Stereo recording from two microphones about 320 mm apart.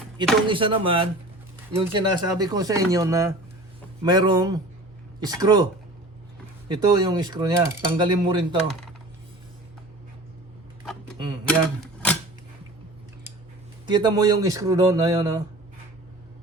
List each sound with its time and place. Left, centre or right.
0.4 s mechanisms: centre
6.7 s mechanisms: centre
11.4 s typewriter: centre
13.8 s mechanisms: centre